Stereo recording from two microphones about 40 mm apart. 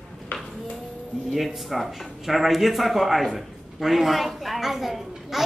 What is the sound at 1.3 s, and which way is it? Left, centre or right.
Speech, centre.